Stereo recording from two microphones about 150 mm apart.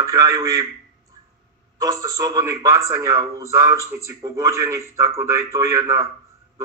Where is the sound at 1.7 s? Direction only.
25° right (ahead or behind).